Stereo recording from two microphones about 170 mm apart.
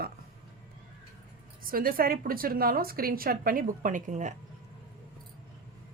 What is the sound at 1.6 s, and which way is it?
Speech, 60° right (ahead or behind).